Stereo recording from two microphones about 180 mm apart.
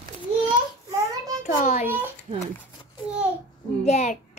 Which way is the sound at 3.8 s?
40° left (ahead or behind).